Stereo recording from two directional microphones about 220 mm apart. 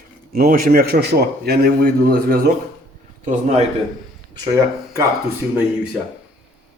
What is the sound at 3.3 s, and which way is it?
Speech, 30° right (ahead or behind).